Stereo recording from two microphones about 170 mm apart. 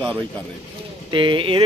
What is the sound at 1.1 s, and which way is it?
Speech, 30° right (ahead or behind).